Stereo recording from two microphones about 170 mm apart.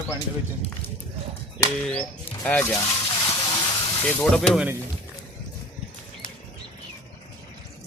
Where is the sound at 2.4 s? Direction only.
15° left (ahead or behind).